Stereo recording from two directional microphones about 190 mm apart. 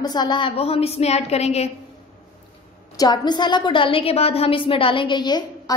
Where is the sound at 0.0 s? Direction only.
20° left (ahead or behind).